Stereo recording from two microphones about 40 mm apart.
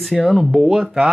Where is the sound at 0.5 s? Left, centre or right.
Centre.